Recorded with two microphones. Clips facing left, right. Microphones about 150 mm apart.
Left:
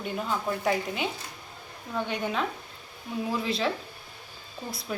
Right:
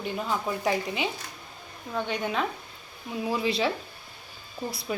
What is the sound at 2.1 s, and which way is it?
Speech, centre (ahead or behind).